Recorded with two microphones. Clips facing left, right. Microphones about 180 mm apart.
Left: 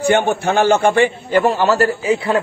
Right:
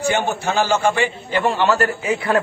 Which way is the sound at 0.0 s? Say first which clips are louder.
Left 5 dB; 55° left (ahead or behind).